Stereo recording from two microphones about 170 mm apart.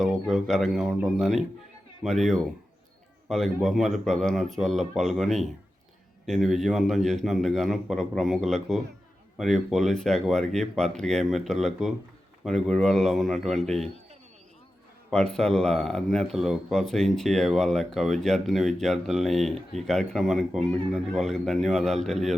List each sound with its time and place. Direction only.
0.0 s speech: centre (ahead or behind)
15.1 s speech: 5° left (ahead or behind)